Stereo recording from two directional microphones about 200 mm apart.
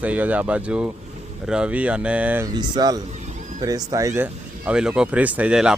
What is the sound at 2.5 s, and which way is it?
Speech, 20° right (ahead or behind).